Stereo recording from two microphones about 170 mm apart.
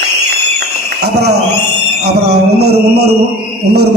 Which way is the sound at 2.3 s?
70° right (ahead or behind).